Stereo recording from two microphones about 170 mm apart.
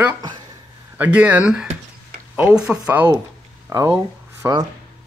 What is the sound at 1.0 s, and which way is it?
Speech, 5° right (ahead or behind).